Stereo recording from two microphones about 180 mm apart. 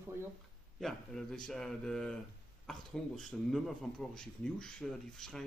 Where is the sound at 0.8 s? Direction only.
Centre (ahead or behind).